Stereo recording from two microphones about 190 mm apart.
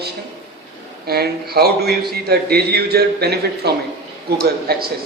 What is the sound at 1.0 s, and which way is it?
A man's voice, 55° right (ahead or behind).